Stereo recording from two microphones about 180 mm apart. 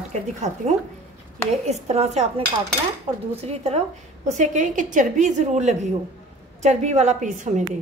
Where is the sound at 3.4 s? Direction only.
35° right (ahead or behind).